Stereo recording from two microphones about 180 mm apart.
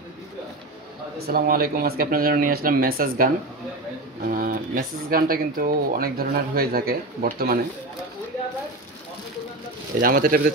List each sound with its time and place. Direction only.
1.2 s speech: 55° right (ahead or behind)
4.3 s speech: 50° right (ahead or behind)
9.9 s speech: 50° right (ahead or behind)